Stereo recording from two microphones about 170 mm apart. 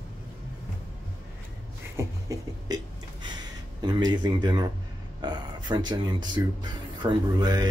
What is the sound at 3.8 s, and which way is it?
Speech, 25° right (ahead or behind).